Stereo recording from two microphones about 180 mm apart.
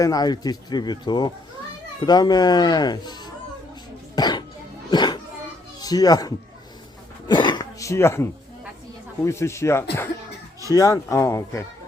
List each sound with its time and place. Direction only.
0.0 s speech: 20° left (ahead or behind)
4.1 s cough: 25° left (ahead or behind)
4.9 s music: 25° left (ahead or behind)
5.8 s speech: 20° left (ahead or behind)
7.3 s throat clearing: 25° left (ahead or behind)
9.2 s speech: 15° left (ahead or behind)